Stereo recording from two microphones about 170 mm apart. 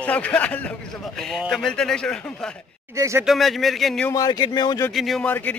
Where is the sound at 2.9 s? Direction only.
20° right (ahead or behind).